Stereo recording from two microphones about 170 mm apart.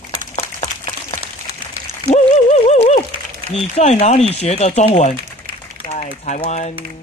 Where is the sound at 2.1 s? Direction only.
40° left (ahead or behind).